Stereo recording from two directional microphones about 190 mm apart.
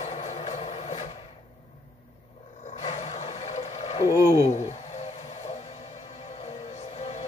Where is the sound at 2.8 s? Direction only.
35° left (ahead or behind).